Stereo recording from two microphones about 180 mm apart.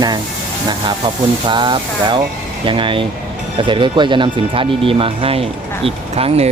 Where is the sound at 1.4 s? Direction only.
25° right (ahead or behind).